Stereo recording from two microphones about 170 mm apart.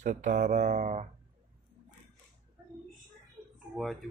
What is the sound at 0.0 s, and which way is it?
Mantra, 50° right (ahead or behind).